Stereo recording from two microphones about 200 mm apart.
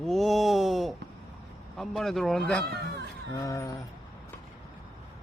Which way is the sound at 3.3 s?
15° left (ahead or behind).